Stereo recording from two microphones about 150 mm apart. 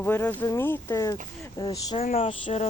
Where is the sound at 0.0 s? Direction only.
15° left (ahead or behind).